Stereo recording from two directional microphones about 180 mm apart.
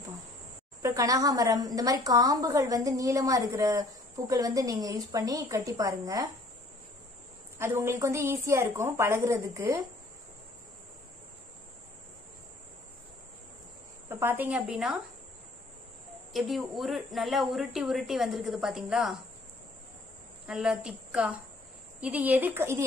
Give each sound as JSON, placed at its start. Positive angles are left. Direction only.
{"t": 0.8, "sound": "a woman's voice", "side_deg": -20}
{"t": 7.5, "sound": "a woman's voice", "side_deg": -15}
{"t": 14.0, "sound": "speech", "side_deg": -10}
{"t": 16.3, "sound": "speech", "side_deg": 0}
{"t": 20.4, "sound": "a woman's voice", "side_deg": -5}